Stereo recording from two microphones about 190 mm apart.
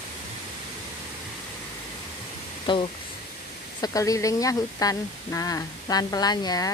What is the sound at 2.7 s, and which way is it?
Speech, 25° left (ahead or behind).